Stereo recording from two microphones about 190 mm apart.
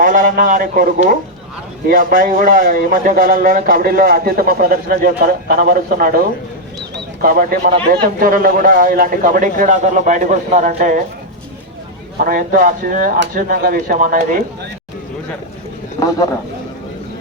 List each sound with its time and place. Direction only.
0.0 s speech: 45° right (ahead or behind)
6.9 s bird: 50° right (ahead or behind)
8.2 s speech: 50° right (ahead or behind)
12.2 s speech: 45° right (ahead or behind)
16.0 s a man's voice: 20° left (ahead or behind)